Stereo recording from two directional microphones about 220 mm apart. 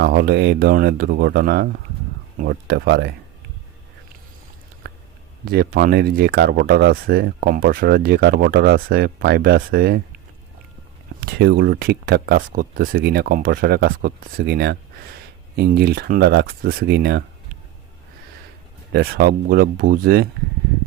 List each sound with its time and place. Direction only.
0.0 s speech: 45° right (ahead or behind)
5.5 s speech: 45° right (ahead or behind)
11.2 s speech: 45° right (ahead or behind)
18.9 s speech: 45° right (ahead or behind)